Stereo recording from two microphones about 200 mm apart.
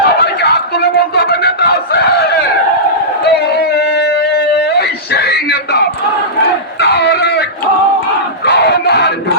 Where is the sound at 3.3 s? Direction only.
55° left (ahead or behind).